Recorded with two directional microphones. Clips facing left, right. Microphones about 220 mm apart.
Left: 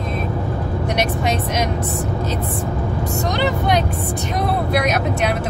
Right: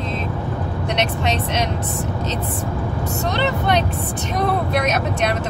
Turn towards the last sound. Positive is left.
turn(degrees=10)  # may be behind; listen again after turning